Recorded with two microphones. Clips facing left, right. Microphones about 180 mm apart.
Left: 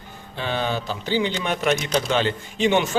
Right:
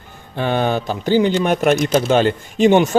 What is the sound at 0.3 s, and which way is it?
A man's voice, 55° right (ahead or behind).